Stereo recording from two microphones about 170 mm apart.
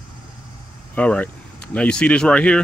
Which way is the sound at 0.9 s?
5° left (ahead or behind).